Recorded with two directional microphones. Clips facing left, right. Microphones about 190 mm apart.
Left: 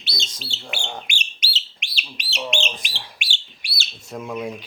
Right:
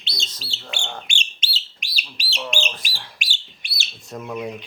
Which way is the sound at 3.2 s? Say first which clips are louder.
Even; 40° right (ahead or behind).